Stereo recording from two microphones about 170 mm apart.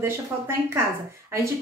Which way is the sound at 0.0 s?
15° right (ahead or behind).